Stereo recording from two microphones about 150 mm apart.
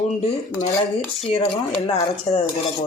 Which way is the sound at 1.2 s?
40° left (ahead or behind).